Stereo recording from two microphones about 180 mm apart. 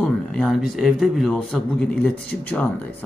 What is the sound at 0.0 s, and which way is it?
Speech, 5° left (ahead or behind).